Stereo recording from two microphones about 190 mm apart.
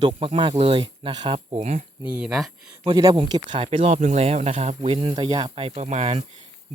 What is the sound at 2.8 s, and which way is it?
Speech, 20° right (ahead or behind).